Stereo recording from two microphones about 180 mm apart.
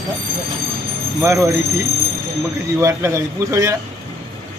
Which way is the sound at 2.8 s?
15° right (ahead or behind).